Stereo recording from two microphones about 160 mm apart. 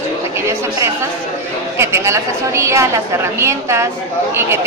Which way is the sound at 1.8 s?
15° right (ahead or behind).